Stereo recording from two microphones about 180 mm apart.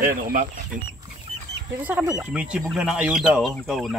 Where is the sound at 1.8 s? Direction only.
10° right (ahead or behind).